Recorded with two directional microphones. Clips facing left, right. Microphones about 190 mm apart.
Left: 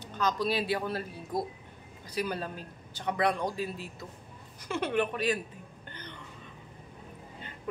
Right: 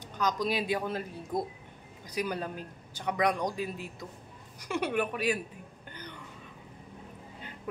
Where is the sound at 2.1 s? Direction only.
15° right (ahead or behind).